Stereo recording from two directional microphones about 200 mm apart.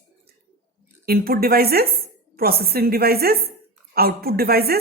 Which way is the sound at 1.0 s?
50° right (ahead or behind).